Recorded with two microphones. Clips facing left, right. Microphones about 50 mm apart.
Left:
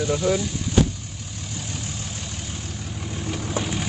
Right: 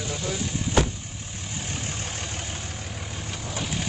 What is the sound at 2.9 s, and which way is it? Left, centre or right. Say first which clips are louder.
Vehicle: left 4 dB; centre.